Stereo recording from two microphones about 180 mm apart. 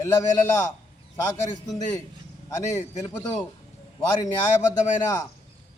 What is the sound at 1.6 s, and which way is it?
Speech, 20° left (ahead or behind).